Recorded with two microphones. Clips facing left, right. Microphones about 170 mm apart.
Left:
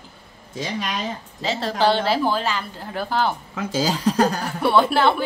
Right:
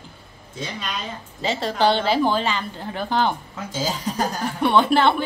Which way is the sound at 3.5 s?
70° left (ahead or behind).